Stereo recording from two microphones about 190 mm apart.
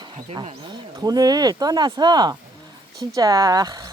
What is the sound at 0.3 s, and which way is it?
Speech, 25° right (ahead or behind).